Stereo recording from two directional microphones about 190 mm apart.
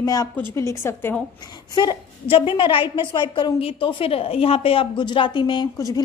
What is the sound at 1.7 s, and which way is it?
A woman's voice, 25° left (ahead or behind).